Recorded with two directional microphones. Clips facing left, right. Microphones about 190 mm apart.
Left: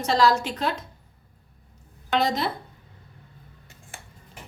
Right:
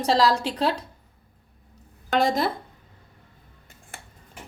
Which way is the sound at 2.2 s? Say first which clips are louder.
Right 3 dB; 50° right (ahead or behind).